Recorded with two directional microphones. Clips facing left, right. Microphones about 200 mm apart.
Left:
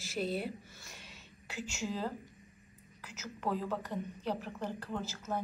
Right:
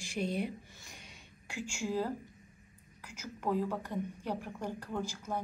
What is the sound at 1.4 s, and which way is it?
A woman's voice, 10° right (ahead or behind).